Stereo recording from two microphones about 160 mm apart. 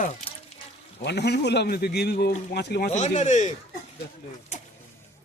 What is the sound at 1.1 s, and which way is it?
A man's voice, 90° left.